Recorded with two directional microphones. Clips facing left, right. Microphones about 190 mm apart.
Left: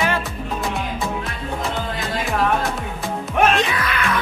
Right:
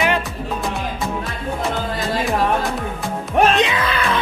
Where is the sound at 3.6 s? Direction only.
25° right (ahead or behind).